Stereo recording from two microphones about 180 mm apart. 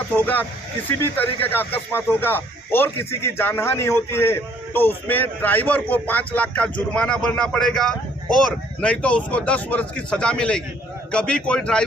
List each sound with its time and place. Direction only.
0.1 s speech: 10° left (ahead or behind)